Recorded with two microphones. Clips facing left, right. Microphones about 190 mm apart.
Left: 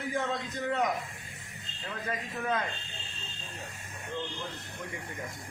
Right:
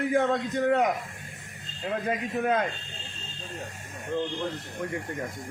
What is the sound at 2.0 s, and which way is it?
Speech, 65° right (ahead or behind).